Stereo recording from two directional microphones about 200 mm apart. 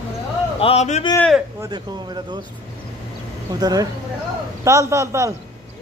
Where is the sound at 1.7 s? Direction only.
20° right (ahead or behind).